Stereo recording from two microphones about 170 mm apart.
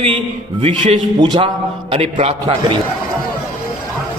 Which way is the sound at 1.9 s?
35° right (ahead or behind).